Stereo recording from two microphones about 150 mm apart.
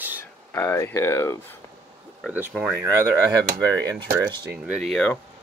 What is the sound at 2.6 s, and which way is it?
Speech, 15° right (ahead or behind).